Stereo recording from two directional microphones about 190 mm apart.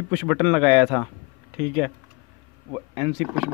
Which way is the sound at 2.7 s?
25° right (ahead or behind).